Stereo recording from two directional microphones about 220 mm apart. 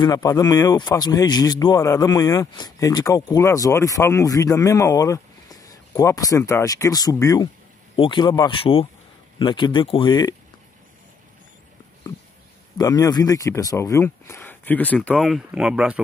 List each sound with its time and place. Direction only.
0.0 s speech: 15° left (ahead or behind)
12.7 s speech: 15° left (ahead or behind); by 16.0 s 5° right (ahead or behind)